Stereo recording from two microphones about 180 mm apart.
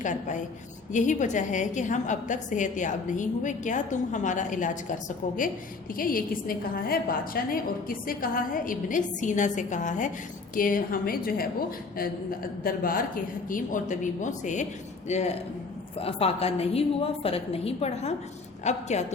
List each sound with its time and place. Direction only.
0.0 s a woman's voice: 45° left (ahead or behind)
12.6 s a woman's voice: 55° left (ahead or behind)